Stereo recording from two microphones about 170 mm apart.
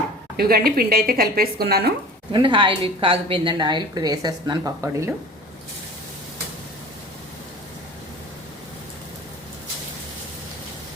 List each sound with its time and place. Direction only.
0.3 s speech: 60° right (ahead or behind)
2.3 s a woman's voice: 30° right (ahead or behind)